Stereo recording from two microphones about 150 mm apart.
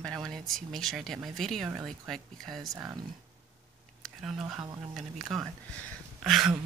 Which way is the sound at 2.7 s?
20° right (ahead or behind).